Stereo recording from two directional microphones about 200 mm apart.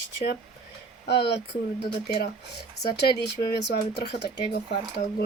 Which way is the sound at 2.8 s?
55° left (ahead or behind).